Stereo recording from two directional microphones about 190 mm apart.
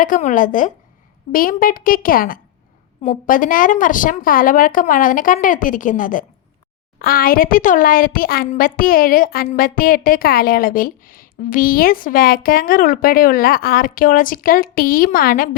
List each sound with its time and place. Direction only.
0.0 s a woman's voice: 45° left (ahead or behind)